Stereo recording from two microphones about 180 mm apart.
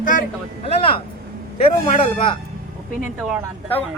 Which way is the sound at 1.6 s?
30° left (ahead or behind).